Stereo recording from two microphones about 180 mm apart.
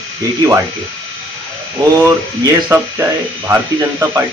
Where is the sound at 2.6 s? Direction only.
15° right (ahead or behind).